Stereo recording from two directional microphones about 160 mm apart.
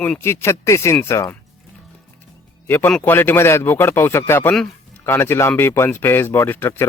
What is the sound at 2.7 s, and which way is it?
Speech, 10° left (ahead or behind).